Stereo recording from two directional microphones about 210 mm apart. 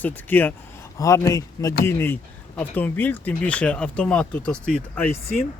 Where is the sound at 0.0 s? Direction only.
10° left (ahead or behind).